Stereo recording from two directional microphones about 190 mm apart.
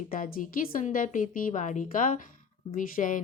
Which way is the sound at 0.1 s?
45° left (ahead or behind).